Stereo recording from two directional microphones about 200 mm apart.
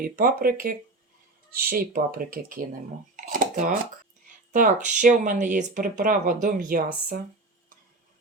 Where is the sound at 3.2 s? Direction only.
40° right (ahead or behind).